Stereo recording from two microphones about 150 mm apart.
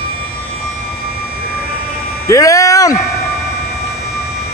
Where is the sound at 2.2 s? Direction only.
20° left (ahead or behind).